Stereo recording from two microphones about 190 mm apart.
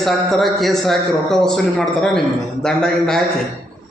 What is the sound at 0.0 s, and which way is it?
A man's voice, centre (ahead or behind).